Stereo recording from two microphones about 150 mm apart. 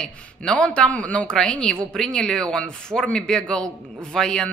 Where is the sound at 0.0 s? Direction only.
5° left (ahead or behind).